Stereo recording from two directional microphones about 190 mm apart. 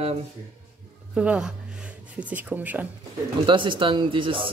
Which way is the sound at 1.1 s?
5° right (ahead or behind).